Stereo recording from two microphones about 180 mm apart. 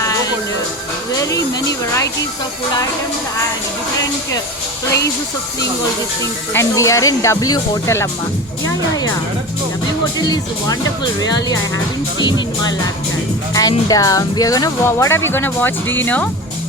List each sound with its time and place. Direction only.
1.1 s speech: 20° left (ahead or behind)
6.5 s speech: 15° left (ahead or behind)
10.2 s speech: 20° left (ahead or behind)
13.5 s speech: 20° left (ahead or behind)